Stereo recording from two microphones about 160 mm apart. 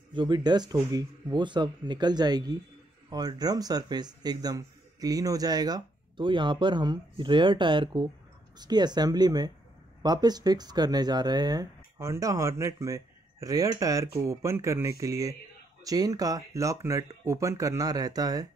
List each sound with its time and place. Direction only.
0.1 s speech: 30° right (ahead or behind)